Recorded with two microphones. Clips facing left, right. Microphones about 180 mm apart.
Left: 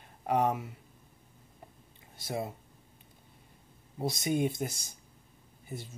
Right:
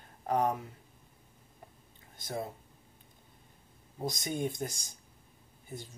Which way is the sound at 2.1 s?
10° left (ahead or behind).